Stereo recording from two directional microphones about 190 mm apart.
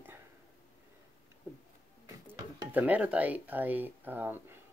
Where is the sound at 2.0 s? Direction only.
15° right (ahead or behind).